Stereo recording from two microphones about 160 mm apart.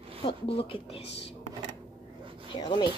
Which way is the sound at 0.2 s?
35° left (ahead or behind).